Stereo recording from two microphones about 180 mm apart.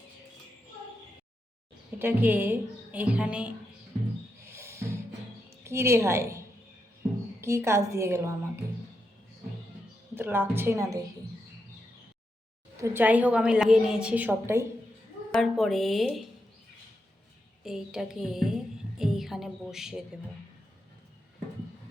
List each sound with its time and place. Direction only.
2.0 s a woman's voice: 10° right (ahead or behind)
4.4 s music: 15° right (ahead or behind)
5.6 s a woman's voice: 15° right (ahead or behind)
7.4 s a woman's voice: 15° right (ahead or behind)
10.2 s a woman's voice: 10° right (ahead or behind)
12.7 s a woman's voice: 15° right (ahead or behind)
15.3 s speech: centre (ahead or behind)
17.6 s speech: centre (ahead or behind)